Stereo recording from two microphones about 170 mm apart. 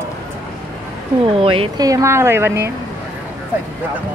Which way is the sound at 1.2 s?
30° right (ahead or behind).